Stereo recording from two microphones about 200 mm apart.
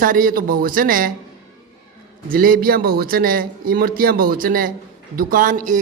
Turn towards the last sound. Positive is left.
turn(degrees=-40)  # may be behind; listen again after turning